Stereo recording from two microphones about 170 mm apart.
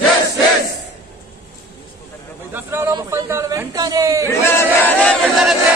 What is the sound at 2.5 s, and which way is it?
Speech, 15° right (ahead or behind).